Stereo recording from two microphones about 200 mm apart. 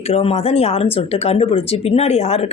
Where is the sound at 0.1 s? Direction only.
30° left (ahead or behind).